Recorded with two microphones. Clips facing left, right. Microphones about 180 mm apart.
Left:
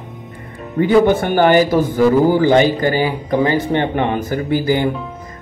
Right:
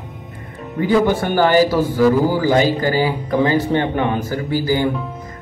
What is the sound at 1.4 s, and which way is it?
Speech, 20° left (ahead or behind).